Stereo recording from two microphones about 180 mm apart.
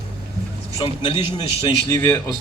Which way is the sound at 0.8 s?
30° left (ahead or behind).